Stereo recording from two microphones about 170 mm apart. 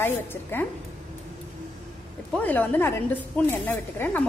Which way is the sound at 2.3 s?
10° left (ahead or behind).